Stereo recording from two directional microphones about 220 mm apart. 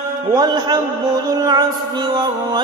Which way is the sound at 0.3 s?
20° right (ahead or behind).